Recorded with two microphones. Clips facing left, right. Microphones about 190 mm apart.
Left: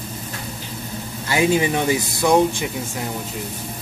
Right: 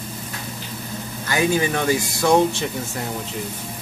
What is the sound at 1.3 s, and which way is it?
Speech, 25° left (ahead or behind).